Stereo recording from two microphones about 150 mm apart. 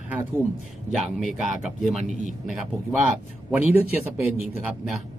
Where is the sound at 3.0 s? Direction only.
5° right (ahead or behind).